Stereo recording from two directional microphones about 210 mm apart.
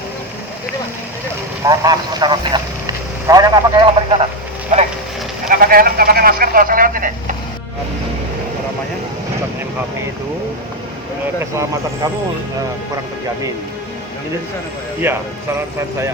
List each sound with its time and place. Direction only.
1.6 s speech: 20° right (ahead or behind)
5.5 s speech: 45° right (ahead or behind)
15.1 s speech: 10° right (ahead or behind)